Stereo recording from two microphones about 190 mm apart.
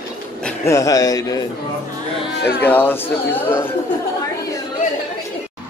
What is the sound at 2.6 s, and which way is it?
Speech, 10° left (ahead or behind).